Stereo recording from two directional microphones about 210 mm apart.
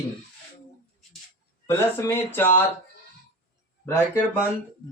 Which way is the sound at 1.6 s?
10° left (ahead or behind).